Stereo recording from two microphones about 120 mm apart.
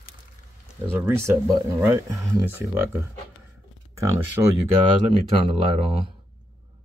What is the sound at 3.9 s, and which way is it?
Speech, 20° right (ahead or behind).